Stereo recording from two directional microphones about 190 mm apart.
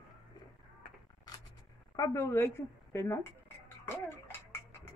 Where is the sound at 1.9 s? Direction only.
15° left (ahead or behind).